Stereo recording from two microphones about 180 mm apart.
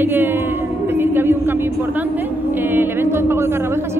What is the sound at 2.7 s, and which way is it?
Speech, 10° right (ahead or behind).